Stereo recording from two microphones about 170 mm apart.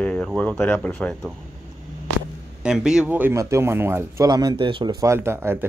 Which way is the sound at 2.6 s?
5° right (ahead or behind).